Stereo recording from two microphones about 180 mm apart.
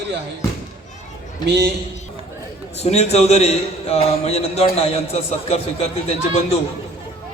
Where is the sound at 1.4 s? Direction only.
65° right (ahead or behind).